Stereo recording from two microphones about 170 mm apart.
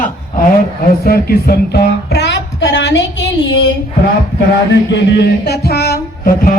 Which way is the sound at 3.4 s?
90° left.